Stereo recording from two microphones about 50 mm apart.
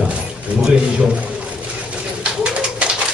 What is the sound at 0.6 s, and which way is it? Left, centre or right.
Speech, centre.